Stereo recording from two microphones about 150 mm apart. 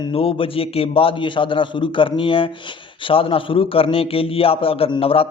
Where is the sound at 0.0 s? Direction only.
40° left (ahead or behind).